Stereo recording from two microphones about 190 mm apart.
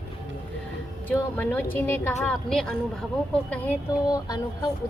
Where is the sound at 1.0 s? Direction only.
10° left (ahead or behind).